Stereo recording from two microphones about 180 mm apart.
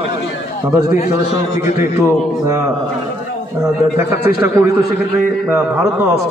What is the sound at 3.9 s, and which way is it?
Speech, 15° right (ahead or behind).